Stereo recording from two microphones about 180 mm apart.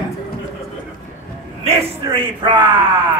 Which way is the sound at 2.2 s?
25° right (ahead or behind).